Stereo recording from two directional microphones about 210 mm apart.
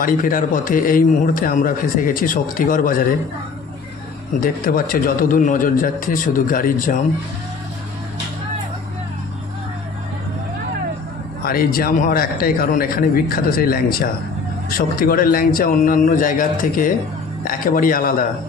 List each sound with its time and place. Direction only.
0.0 s a man's voice: 40° left (ahead or behind)
4.4 s a man's voice: 45° left (ahead or behind)
11.4 s a man's voice: 45° left (ahead or behind)